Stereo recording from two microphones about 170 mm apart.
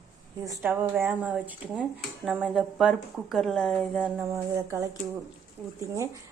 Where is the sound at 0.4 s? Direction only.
20° right (ahead or behind); by 4.1 s centre (ahead or behind).